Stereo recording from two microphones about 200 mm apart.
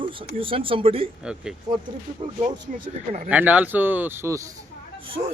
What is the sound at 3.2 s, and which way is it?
Speech, 10° right (ahead or behind).